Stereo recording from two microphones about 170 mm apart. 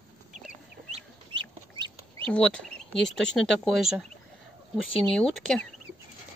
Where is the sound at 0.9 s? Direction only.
30° right (ahead or behind).